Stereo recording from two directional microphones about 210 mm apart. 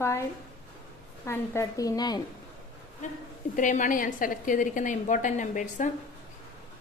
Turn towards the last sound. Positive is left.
turn(degrees=35)  # may be behind; listen again after turning